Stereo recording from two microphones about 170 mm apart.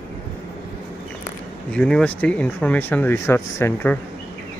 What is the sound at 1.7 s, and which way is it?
Speech, 5° left (ahead or behind).